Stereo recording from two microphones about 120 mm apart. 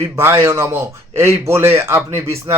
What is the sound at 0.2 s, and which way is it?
Speech, 20° right (ahead or behind).